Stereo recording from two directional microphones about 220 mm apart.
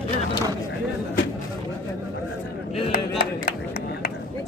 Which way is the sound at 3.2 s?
45° left (ahead or behind).